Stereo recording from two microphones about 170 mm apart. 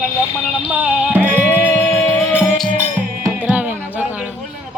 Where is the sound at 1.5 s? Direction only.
10° left (ahead or behind).